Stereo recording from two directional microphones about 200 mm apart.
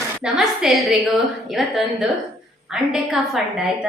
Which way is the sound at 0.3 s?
Centre (ahead or behind).